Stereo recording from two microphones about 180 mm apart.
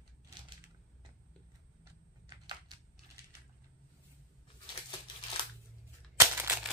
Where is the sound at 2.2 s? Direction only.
25° right (ahead or behind).